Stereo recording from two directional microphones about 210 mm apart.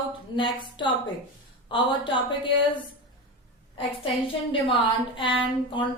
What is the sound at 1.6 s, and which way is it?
Speech, 25° left (ahead or behind).